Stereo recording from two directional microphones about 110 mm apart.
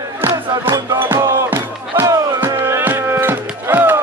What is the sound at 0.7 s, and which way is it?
Music, 30° right (ahead or behind).